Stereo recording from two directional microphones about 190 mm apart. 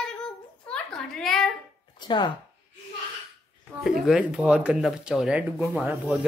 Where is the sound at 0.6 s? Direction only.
5° left (ahead or behind).